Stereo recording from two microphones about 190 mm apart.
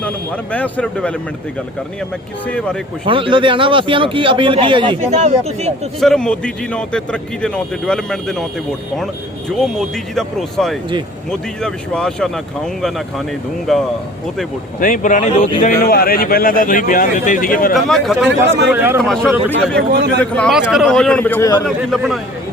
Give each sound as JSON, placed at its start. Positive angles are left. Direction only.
{"t": 0.5, "sound": "a man's voice", "side_deg": 5}
{"t": 2.5, "sound": "a man's voice", "side_deg": 5}
{"t": 3.1, "sound": "speech", "side_deg": -25}
{"t": 6.0, "sound": "a man's voice", "side_deg": 5}
{"t": 9.6, "sound": "a man's voice", "side_deg": 0}
{"t": 14.8, "sound": "a man's voice", "side_deg": 45}
{"t": 15.6, "sound": "a man's voice", "side_deg": 50}
{"t": 17.7, "sound": "a man's voice", "side_deg": 0}
{"t": 19.0, "sound": "a man's voice", "side_deg": 0}
{"t": 21.8, "sound": "a man's voice", "side_deg": 0}